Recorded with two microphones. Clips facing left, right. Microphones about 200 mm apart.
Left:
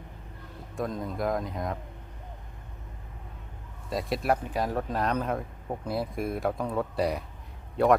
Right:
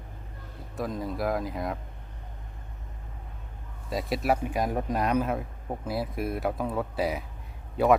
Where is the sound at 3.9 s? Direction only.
Centre (ahead or behind).